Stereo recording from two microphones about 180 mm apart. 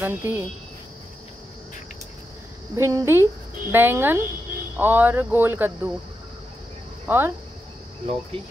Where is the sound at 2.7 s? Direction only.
15° right (ahead or behind).